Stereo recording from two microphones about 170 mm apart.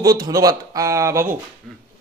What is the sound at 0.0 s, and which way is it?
A man's voice, 20° right (ahead or behind).